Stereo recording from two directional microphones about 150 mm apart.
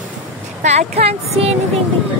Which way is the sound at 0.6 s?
50° right (ahead or behind).